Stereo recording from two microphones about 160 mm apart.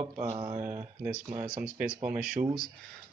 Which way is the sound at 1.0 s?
45° right (ahead or behind).